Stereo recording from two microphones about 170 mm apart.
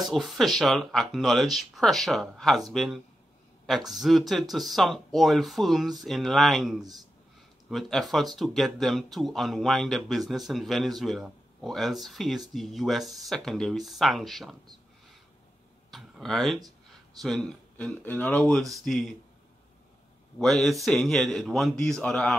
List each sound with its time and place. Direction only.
0.1 s speech: centre (ahead or behind)
15.9 s a sound: centre (ahead or behind)
17.2 s speech: centre (ahead or behind)
20.3 s speech: centre (ahead or behind)